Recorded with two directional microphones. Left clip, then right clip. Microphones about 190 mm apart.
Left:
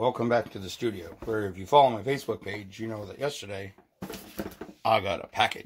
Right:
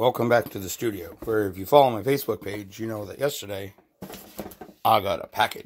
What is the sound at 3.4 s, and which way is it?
Speech, 40° right (ahead or behind).